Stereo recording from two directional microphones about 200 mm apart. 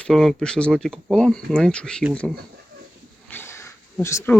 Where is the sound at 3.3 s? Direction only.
10° left (ahead or behind).